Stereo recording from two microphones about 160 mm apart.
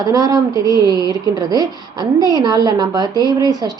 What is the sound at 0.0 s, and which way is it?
A woman's voice, 20° right (ahead or behind).